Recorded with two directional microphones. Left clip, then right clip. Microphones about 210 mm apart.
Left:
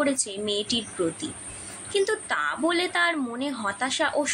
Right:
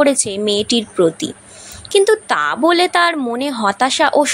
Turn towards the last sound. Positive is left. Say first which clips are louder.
# right 12 dB
turn(degrees=-40)  # may be behind; listen again after turning